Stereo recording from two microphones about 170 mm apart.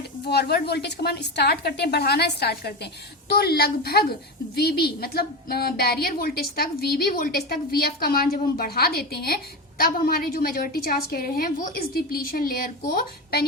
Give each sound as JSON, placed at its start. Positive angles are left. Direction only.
{"t": 0.3, "sound": "a woman's voice", "side_deg": 70}